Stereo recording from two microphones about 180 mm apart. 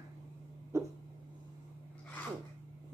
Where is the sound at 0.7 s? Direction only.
15° right (ahead or behind).